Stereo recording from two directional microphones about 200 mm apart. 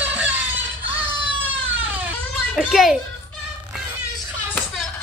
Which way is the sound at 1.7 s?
10° right (ahead or behind).